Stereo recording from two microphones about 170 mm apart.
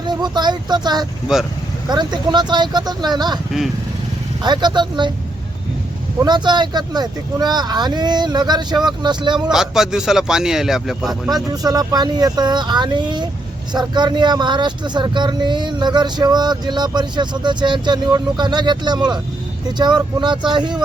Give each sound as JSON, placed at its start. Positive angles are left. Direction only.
{"t": 0.1, "sound": "speech", "side_deg": -25}
{"t": 4.4, "sound": "speech", "side_deg": -25}
{"t": 6.1, "sound": "speech", "side_deg": -25}
{"t": 9.5, "sound": "a man's voice", "side_deg": -5}
{"t": 11.5, "sound": "speech", "side_deg": -20}